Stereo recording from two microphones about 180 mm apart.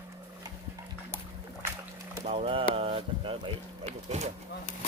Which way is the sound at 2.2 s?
35° right (ahead or behind).